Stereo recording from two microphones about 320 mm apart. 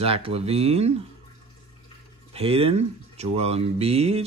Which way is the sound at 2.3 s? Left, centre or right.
Centre.